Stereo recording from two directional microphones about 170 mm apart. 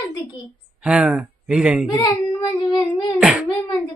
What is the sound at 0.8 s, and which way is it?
Speech, 5° right (ahead or behind).